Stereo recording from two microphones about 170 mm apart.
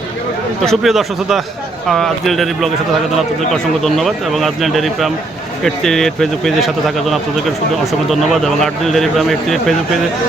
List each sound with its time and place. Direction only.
0.6 s a man's voice: centre (ahead or behind)